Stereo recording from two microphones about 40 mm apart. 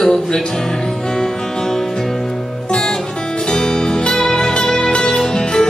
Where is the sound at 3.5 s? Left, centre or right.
Centre.